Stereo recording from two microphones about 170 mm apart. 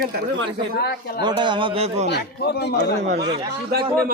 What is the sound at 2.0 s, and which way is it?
Speech, 80° left.